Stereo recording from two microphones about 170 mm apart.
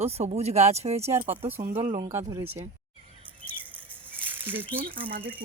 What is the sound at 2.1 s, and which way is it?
Speech, 15° right (ahead or behind).